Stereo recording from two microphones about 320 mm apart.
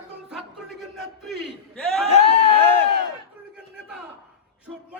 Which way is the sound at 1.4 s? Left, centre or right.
Centre.